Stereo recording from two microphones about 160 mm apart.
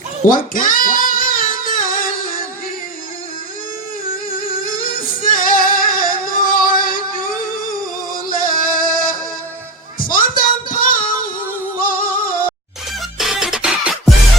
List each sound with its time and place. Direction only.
0.3 s female singing: 60° left (ahead or behind)
4.8 s music: 60° left (ahead or behind)
8.1 s music: 60° left (ahead or behind)
10.1 s a sound: 60° left (ahead or behind)
11.8 s music: 60° left (ahead or behind)
13.1 s music: centre (ahead or behind)